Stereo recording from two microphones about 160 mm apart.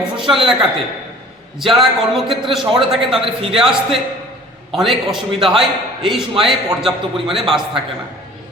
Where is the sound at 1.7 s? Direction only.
Centre (ahead or behind).